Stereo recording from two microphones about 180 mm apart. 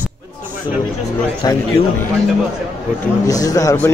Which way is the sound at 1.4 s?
20° left (ahead or behind).